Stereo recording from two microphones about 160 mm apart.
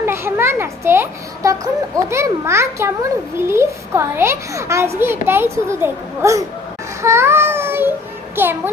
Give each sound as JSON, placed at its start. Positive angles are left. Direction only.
{"t": 0.0, "sound": "a child's voice", "side_deg": -15}